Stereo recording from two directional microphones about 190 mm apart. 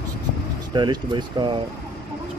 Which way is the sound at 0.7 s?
25° right (ahead or behind).